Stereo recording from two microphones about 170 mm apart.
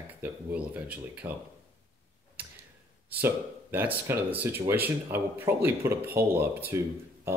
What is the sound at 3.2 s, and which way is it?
Speech, 10° right (ahead or behind).